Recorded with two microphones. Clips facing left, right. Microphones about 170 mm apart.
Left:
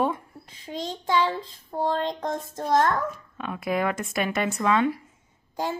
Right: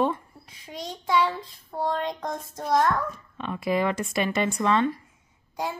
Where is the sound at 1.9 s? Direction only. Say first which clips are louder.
Left 2 dB; 30° left (ahead or behind).